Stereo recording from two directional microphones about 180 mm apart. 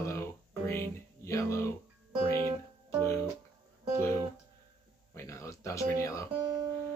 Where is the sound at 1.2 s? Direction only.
15° left (ahead or behind).